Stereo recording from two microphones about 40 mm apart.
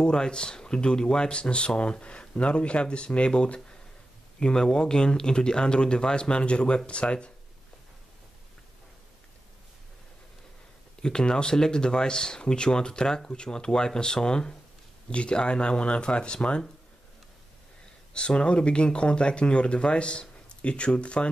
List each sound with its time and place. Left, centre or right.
0.0 s speech: left
11.0 s speech: left
18.1 s speech: left